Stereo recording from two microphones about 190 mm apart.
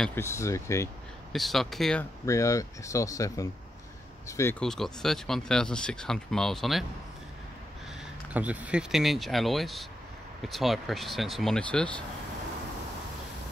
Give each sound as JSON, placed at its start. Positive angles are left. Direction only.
{"t": 0.0, "sound": "speech", "side_deg": 10}
{"t": 1.3, "sound": "speech", "side_deg": 0}
{"t": 2.2, "sound": "speech", "side_deg": 15}
{"t": 4.6, "sound": "speech", "side_deg": 0}
{"t": 8.3, "sound": "speech", "side_deg": -10}